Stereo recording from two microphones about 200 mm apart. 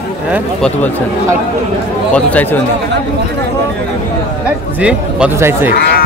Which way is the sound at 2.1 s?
10° left (ahead or behind).